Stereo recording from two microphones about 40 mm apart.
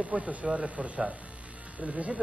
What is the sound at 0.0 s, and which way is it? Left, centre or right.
Speech, right.